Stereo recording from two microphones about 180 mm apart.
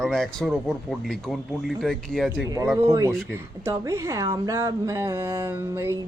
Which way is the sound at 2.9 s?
15° right (ahead or behind).